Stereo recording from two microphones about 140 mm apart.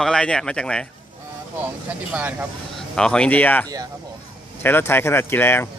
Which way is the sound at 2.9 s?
5° left (ahead or behind).